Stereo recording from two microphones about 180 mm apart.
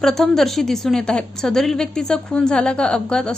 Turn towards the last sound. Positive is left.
turn(degrees=5)  # may be behind; listen again after turning